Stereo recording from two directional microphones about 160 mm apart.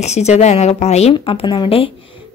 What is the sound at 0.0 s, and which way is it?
A woman's voice, 45° left (ahead or behind).